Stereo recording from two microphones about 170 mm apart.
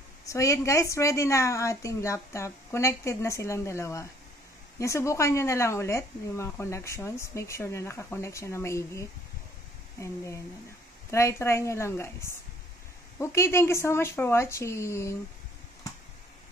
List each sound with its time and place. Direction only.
0.3 s speech: 20° left (ahead or behind)